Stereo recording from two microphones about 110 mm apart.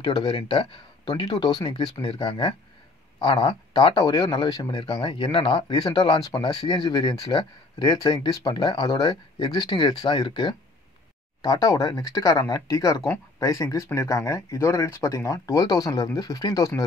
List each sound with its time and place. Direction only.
0.0 s a man's voice: 40° left (ahead or behind)